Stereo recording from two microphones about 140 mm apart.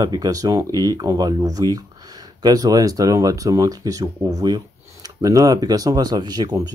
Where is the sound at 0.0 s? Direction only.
25° right (ahead or behind).